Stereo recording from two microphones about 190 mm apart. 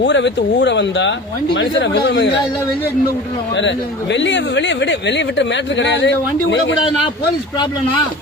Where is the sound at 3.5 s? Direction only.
70° left (ahead or behind).